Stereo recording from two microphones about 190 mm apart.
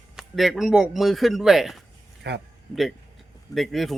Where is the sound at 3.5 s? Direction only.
Centre (ahead or behind).